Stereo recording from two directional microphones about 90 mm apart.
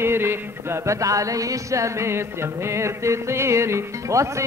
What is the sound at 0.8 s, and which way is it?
Music, 40° right (ahead or behind).